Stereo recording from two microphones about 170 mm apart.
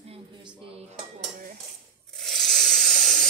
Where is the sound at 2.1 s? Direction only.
Centre (ahead or behind).